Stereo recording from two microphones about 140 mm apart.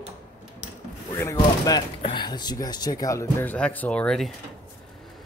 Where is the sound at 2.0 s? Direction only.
35° left (ahead or behind); by 4.3 s 5° left (ahead or behind).